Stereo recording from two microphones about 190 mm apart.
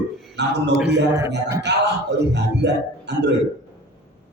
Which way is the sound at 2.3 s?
65° right (ahead or behind).